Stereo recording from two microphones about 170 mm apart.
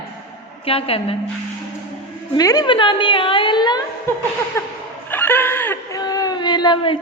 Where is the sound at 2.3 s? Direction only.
20° left (ahead or behind).